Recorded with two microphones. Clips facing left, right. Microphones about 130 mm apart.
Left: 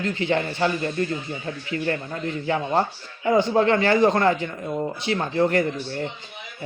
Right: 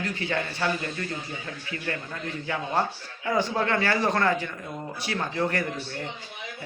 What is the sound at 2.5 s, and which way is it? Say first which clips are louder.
A man's voice: left 5 dB; 25° left (ahead or behind).